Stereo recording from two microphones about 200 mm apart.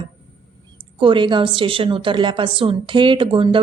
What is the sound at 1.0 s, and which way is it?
A woman's voice, 25° right (ahead or behind).